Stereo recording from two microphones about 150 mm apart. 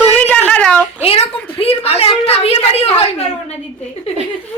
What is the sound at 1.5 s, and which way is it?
A woman's voice, 40° left (ahead or behind).